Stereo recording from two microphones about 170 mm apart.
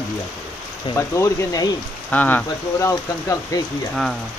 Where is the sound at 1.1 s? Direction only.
20° left (ahead or behind).